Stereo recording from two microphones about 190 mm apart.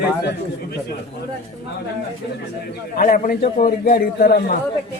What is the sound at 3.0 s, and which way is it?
A man's voice, 45° left (ahead or behind).